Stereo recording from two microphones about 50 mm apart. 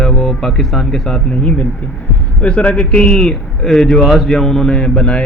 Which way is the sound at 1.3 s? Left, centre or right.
Left.